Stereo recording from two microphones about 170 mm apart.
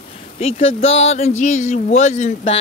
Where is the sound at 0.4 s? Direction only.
35° left (ahead or behind).